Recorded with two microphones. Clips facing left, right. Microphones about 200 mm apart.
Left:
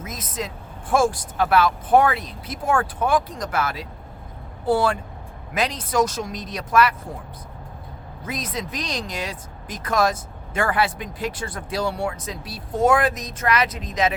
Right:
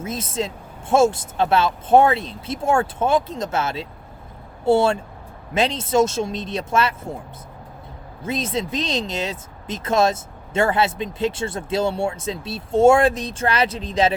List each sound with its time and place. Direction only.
0.0 s speech: 30° right (ahead or behind)
8.2 s speech: 25° right (ahead or behind)